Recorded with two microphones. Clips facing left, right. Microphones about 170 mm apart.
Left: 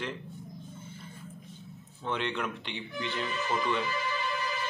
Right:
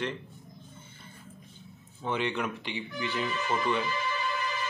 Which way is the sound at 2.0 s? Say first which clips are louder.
Right 2 dB; 5° right (ahead or behind).